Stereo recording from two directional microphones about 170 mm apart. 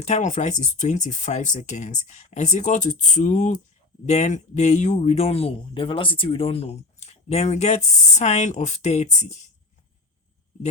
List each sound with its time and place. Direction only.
0.0 s speech: 45° left (ahead or behind)